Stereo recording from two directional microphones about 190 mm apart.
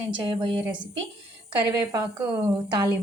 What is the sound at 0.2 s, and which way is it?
Speech, 25° right (ahead or behind).